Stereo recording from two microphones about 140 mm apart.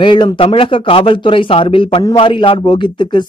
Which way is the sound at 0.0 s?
35° left (ahead or behind).